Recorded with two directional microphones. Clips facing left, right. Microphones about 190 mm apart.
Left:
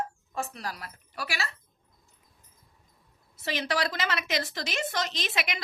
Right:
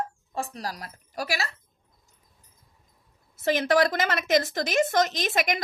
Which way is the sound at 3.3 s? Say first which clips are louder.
Right 8 dB; 50° right (ahead or behind).